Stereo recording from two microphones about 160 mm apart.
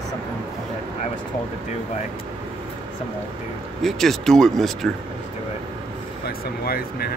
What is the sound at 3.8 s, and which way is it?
Speech, centre (ahead or behind).